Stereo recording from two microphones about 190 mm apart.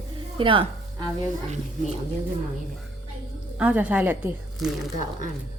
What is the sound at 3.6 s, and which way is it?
Speech, 10° right (ahead or behind).